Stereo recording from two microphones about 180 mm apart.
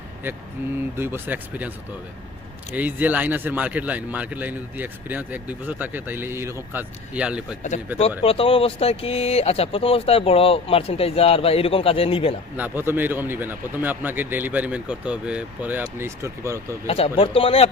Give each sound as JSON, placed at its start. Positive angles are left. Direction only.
{"t": 0.9, "sound": "speech", "side_deg": -10}
{"t": 2.7, "sound": "speech", "side_deg": -10}
{"t": 8.2, "sound": "speech", "side_deg": 30}
{"t": 12.5, "sound": "speech", "side_deg": -10}
{"t": 16.8, "sound": "speech", "side_deg": 30}